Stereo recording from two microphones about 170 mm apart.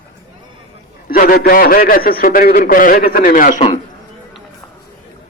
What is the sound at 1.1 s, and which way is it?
A man's voice, 60° left (ahead or behind).